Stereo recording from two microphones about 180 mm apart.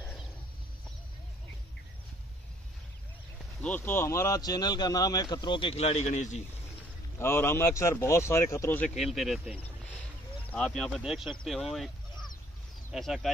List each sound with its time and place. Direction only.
3.6 s speech: 10° left (ahead or behind); by 6.4 s 40° left (ahead or behind)
7.2 s speech: 15° left (ahead or behind)
8.9 s speech: centre (ahead or behind)